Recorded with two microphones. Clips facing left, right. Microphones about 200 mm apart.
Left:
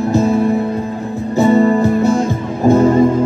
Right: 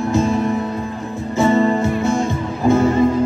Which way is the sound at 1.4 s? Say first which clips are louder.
Left 4 dB; 40° left (ahead or behind).